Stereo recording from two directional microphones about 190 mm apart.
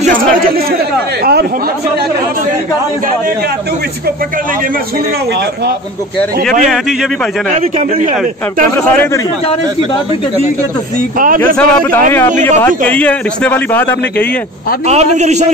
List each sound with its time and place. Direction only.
0.0 s a sound: 50° right (ahead or behind)
1.2 s chatter: 50° right (ahead or behind)
6.7 s a man's voice: centre (ahead or behind)
11.1 s a man's voice: 45° right (ahead or behind)
11.5 s speech: 10° left (ahead or behind)
14.9 s a man's voice: 35° right (ahead or behind)